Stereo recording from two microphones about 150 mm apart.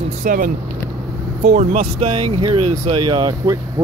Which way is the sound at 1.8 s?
35° right (ahead or behind).